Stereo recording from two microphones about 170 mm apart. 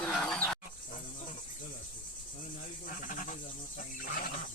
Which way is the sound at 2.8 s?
50° left (ahead or behind).